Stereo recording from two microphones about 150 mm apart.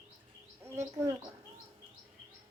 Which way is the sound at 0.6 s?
15° right (ahead or behind).